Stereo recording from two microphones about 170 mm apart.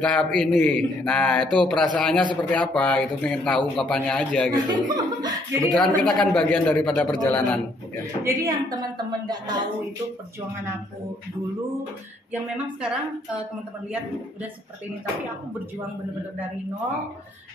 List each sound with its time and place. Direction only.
0.0 s a man's voice: 5° left (ahead or behind)
4.6 s speech: 25° right (ahead or behind)
5.6 s a man's voice: 5° left (ahead or behind)
8.2 s speech: 20° right (ahead or behind)